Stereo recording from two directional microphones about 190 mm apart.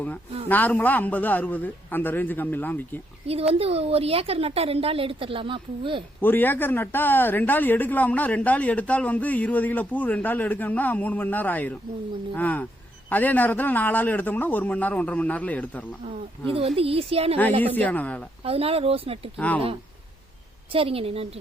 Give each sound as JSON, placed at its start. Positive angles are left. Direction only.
{"t": 0.4, "sound": "speech", "side_deg": 10}
{"t": 3.2, "sound": "a woman's voice", "side_deg": -30}
{"t": 6.2, "sound": "speech", "side_deg": 10}
{"t": 16.5, "sound": "a woman's voice", "side_deg": -30}
{"t": 17.7, "sound": "speech", "side_deg": 10}
{"t": 18.4, "sound": "a woman's voice", "side_deg": -30}
{"t": 20.7, "sound": "a woman's voice", "side_deg": -30}